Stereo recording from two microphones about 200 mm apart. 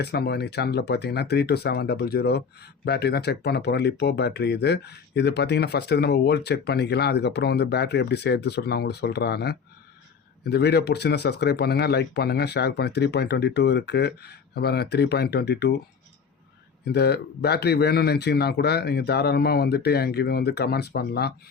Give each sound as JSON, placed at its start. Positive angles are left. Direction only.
{"t": 0.0, "sound": "speech", "side_deg": 55}
{"t": 16.9, "sound": "speech", "side_deg": 55}